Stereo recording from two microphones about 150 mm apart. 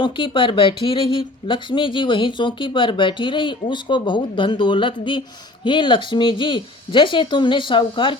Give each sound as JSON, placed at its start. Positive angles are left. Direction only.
{"t": 0.0, "sound": "speech", "side_deg": 35}